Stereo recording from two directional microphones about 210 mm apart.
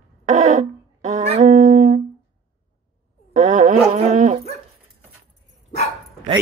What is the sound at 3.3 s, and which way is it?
Dog, 35° right (ahead or behind).